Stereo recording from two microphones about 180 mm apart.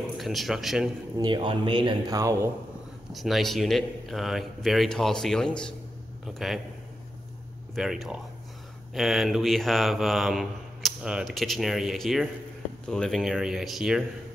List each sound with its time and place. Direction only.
0.2 s mantra: centre (ahead or behind)
1.1 s speech: 25° right (ahead or behind)
3.1 s mantra: centre (ahead or behind)
6.2 s speech: centre (ahead or behind)
7.7 s mantra: centre (ahead or behind)